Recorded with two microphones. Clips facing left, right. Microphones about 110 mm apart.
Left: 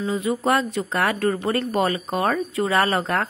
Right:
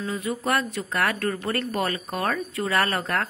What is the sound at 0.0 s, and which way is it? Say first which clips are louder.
Speech: left 5 dB; 15° left (ahead or behind).